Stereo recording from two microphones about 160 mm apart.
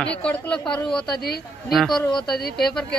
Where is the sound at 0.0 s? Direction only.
10° left (ahead or behind).